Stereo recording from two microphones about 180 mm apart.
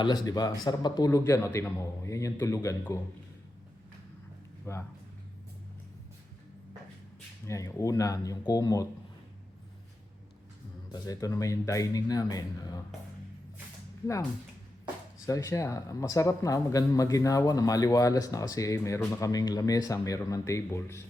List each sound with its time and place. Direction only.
0.0 s a man's voice: 20° left (ahead or behind)
4.6 s speech: 15° left (ahead or behind)
7.4 s speech: 15° left (ahead or behind)
10.9 s speech: 20° left (ahead or behind)
15.3 s speech: 20° left (ahead or behind)